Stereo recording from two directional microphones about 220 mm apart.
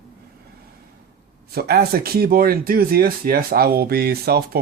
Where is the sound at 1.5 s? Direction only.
45° right (ahead or behind).